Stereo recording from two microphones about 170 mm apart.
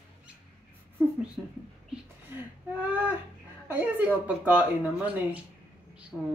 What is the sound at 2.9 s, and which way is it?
A woman's voice, 10° right (ahead or behind).